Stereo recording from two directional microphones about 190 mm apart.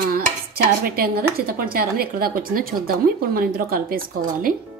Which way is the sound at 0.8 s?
50° right (ahead or behind).